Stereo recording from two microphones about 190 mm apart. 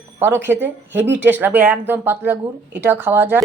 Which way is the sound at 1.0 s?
70° right (ahead or behind).